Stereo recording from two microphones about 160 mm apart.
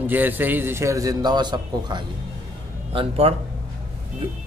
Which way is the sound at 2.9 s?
35° right (ahead or behind).